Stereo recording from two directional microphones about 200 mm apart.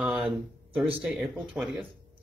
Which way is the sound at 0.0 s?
5° right (ahead or behind).